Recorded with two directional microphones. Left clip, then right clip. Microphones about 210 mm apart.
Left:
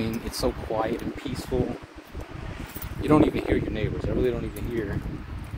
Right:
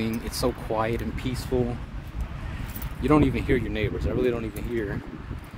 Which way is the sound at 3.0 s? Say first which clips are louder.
Left 1 dB; 10° right (ahead or behind).